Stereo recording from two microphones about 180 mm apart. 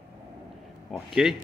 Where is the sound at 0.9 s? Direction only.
Centre (ahead or behind).